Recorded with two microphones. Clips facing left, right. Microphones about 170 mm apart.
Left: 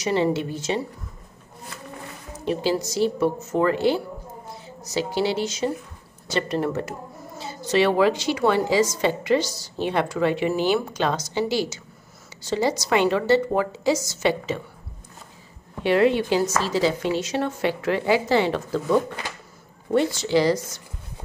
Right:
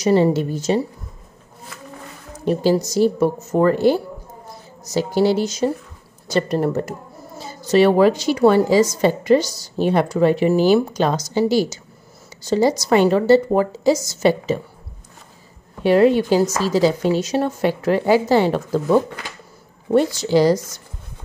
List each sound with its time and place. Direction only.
0.0 s speech: 40° right (ahead or behind)
2.4 s a woman's voice: 40° right (ahead or behind)
15.8 s speech: 40° right (ahead or behind)